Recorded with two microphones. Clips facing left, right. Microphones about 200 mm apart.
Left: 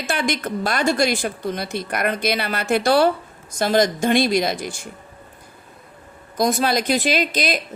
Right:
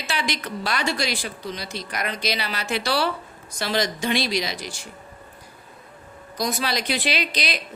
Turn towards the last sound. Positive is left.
turn(degrees=50)  # may be behind; listen again after turning